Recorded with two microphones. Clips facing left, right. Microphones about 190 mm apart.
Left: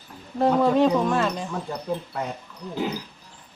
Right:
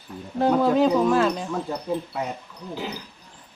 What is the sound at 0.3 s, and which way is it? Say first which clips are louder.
Speech: even; centre (ahead or behind).